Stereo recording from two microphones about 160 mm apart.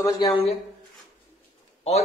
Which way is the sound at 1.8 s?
45° left (ahead or behind).